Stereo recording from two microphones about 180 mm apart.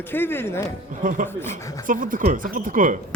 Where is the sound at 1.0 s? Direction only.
45° right (ahead or behind).